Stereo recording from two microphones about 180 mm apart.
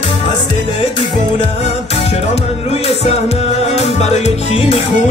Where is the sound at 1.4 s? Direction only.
35° left (ahead or behind).